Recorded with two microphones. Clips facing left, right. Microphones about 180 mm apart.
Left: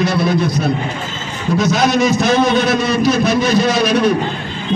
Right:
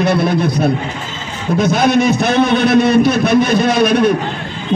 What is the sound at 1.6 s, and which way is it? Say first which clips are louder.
A man's voice: right 2 dB; 55° right (ahead or behind).